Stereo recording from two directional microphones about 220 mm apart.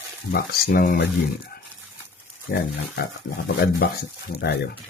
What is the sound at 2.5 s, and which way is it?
Speech, 40° left (ahead or behind).